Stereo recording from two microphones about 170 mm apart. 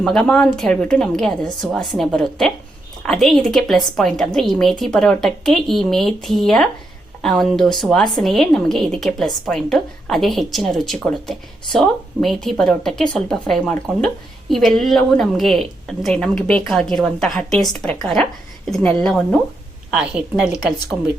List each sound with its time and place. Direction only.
0.0 s a woman's voice: 5° left (ahead or behind)